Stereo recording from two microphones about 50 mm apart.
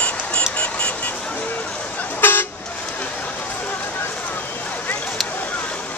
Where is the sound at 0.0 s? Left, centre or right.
Left.